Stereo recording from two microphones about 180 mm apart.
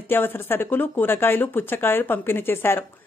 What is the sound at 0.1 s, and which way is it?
A woman's voice, 10° left (ahead or behind).